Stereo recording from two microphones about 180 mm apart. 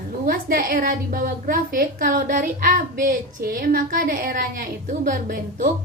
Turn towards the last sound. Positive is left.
turn(degrees=-50)  # may be behind; listen again after turning